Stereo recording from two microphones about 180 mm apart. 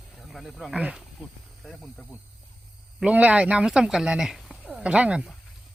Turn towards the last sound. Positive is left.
turn(degrees=-5)  # may be behind; listen again after turning